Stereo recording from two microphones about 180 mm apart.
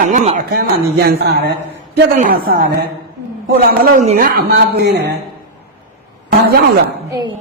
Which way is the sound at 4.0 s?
45° right (ahead or behind).